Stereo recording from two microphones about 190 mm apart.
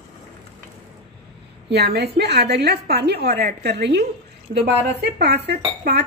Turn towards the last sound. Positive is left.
turn(degrees=-60)  # may be behind; listen again after turning